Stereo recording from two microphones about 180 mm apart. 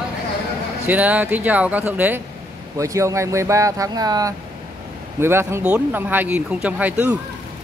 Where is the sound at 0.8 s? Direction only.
10° right (ahead or behind).